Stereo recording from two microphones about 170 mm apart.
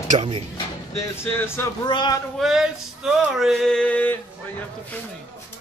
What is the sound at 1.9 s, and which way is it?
Speech, 25° left (ahead or behind).